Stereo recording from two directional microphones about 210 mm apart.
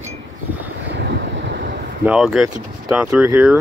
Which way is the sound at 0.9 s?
60° right (ahead or behind).